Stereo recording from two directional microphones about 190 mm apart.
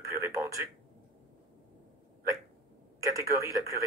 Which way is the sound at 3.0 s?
15° right (ahead or behind).